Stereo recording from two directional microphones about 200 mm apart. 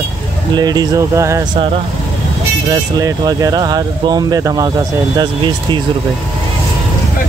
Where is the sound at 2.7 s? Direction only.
20° right (ahead or behind).